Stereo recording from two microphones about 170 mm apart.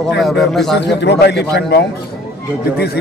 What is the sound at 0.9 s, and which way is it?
Speech, 90° left.